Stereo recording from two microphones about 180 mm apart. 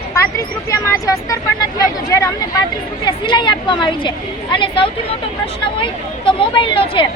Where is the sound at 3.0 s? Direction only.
25° left (ahead or behind).